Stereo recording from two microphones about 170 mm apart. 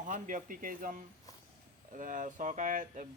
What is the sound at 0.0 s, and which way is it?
Speech, 50° right (ahead or behind).